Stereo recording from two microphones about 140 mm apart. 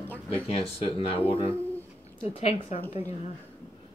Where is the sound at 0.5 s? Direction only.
45° left (ahead or behind).